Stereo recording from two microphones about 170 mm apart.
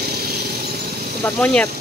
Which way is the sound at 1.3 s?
5° left (ahead or behind).